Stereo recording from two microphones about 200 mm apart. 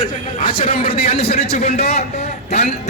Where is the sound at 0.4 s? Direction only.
30° left (ahead or behind).